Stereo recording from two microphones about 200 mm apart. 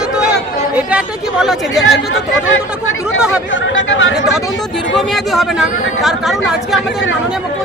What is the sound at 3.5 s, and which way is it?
Speech, 70° left (ahead or behind).